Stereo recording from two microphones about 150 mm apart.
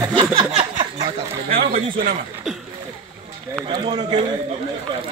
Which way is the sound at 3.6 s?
30° right (ahead or behind).